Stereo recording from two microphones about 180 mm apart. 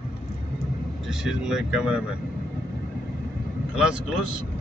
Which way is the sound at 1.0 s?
Centre (ahead or behind).